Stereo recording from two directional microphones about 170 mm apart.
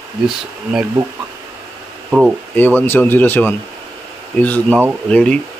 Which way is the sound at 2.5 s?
10° left (ahead or behind).